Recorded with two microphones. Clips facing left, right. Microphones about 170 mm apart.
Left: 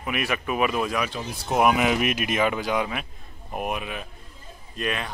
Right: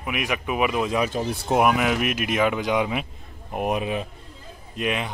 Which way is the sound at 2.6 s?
15° right (ahead or behind).